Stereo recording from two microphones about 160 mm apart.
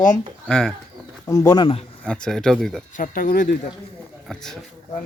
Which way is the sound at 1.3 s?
20° left (ahead or behind).